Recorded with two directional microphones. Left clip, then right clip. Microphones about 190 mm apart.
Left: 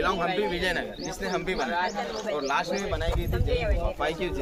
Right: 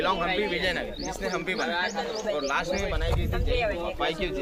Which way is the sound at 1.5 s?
45° right (ahead or behind).